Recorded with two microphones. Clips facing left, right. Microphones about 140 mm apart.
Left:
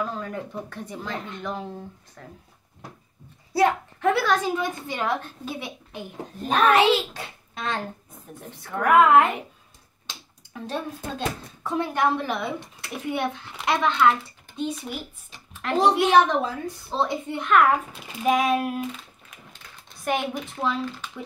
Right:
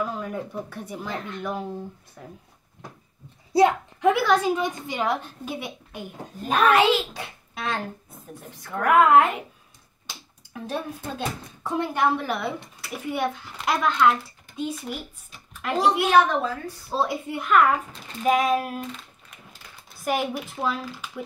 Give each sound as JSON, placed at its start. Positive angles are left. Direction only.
{"t": 0.0, "sound": "a woman's voice", "side_deg": -10}
{"t": 3.5, "sound": "a woman's voice", "side_deg": -15}
{"t": 10.5, "sound": "speech", "side_deg": -5}
{"t": 16.1, "sound": "a woman's voice", "side_deg": 20}
{"t": 16.9, "sound": "speech", "side_deg": -5}
{"t": 20.1, "sound": "speech", "side_deg": -5}